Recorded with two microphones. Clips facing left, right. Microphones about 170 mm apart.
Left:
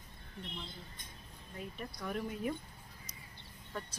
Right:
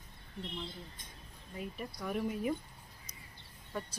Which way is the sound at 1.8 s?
5° right (ahead or behind).